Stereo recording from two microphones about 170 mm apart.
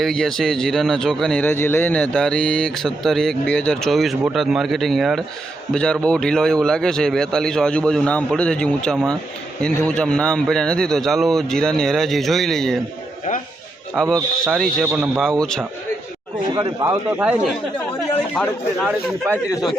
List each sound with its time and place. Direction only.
0.0 s speech: 5° left (ahead or behind)
13.9 s speech: centre (ahead or behind)
16.6 s a man's voice: 20° right (ahead or behind)
18.3 s speech: centre (ahead or behind)
19.2 s a man's voice: 10° right (ahead or behind)